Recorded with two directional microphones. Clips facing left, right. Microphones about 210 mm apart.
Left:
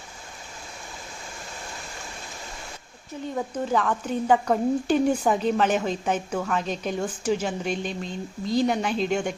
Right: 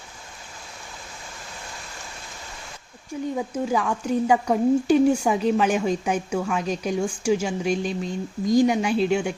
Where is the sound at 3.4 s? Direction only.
10° right (ahead or behind).